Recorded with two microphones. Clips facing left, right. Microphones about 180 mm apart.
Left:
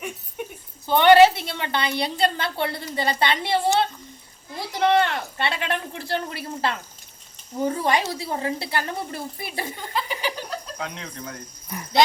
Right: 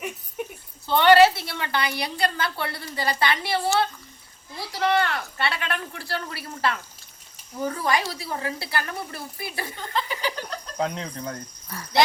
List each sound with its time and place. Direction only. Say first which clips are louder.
0.9 s a woman's voice: left 2 dB; 15° left (ahead or behind)
9.9 s chuckle: even; 15° left (ahead or behind)
10.8 s speech: right 6 dB; 35° right (ahead or behind)
11.7 s cricket: left 2 dB; 20° left (ahead or behind)